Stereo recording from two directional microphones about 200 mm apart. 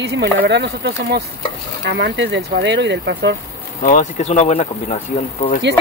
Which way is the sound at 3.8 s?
40° left (ahead or behind).